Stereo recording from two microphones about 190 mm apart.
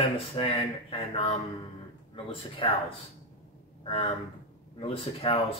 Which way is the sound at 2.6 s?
25° left (ahead or behind).